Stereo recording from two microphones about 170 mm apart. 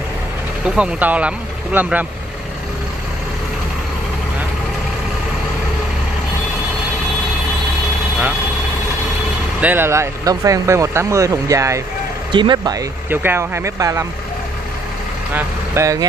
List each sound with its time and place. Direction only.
0.7 s speech: 10° right (ahead or behind)
9.6 s speech: 10° right (ahead or behind)
13.1 s speech: 10° right (ahead or behind)
15.3 s speech: 15° right (ahead or behind)